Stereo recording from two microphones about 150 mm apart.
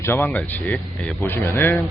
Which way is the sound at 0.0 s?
15° left (ahead or behind).